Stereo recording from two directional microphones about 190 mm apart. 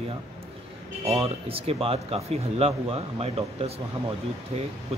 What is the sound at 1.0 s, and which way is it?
Speech, 30° right (ahead or behind).